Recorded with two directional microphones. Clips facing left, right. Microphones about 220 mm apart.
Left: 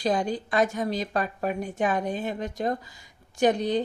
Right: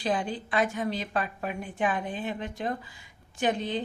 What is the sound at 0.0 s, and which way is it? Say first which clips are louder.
A woman's voice: left 4 dB; 40° left (ahead or behind).